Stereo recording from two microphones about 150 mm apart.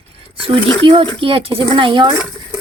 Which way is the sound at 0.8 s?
35° right (ahead or behind).